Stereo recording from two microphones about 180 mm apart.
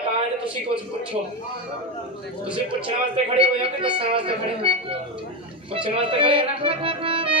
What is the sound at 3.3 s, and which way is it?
Speech, 30° right (ahead or behind).